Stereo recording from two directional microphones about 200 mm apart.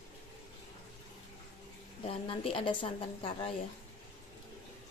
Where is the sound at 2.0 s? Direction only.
25° left (ahead or behind).